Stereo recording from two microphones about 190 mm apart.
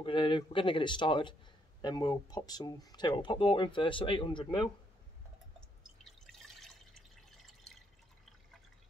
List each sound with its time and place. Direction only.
0.0 s speech: 25° left (ahead or behind)
6.0 s drip: centre (ahead or behind)
7.2 s a sound: centre (ahead or behind)